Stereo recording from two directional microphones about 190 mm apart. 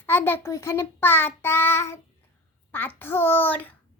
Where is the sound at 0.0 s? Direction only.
10° left (ahead or behind).